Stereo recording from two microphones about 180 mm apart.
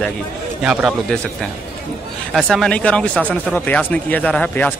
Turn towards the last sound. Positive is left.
turn(degrees=5)  # may be behind; listen again after turning